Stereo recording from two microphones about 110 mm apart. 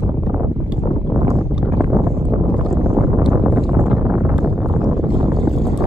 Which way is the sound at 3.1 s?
15° right (ahead or behind).